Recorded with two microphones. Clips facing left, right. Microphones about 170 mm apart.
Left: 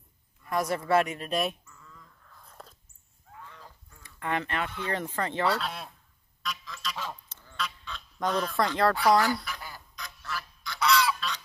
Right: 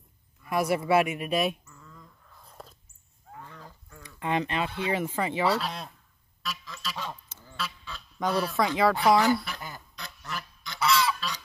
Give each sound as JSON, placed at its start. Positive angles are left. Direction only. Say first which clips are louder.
{"t": 0.5, "sound": "speech", "louder": "right 2 dB", "side_deg": -10}
{"t": 2.3, "sound": "a sound", "louder": "right 2 dB", "side_deg": -10}
{"t": 3.3, "sound": "wild animals", "louder": "right 3 dB", "side_deg": -45}
{"t": 4.0, "sound": "speech", "louder": "right 3 dB", "side_deg": -20}
{"t": 6.4, "sound": "quack", "louder": "even", "side_deg": -5}
{"t": 7.2, "sound": "goose", "louder": "even", "side_deg": -5}
{"t": 9.2, "sound": "quack", "louder": "right 4 dB", "side_deg": -25}
{"t": 10.2, "sound": "goose", "louder": "left 1 dB", "side_deg": -20}
{"t": 10.8, "sound": "goose", "louder": "even", "side_deg": 0}